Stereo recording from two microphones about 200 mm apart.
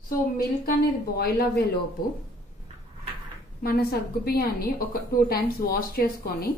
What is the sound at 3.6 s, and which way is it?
A woman's voice, 50° left (ahead or behind).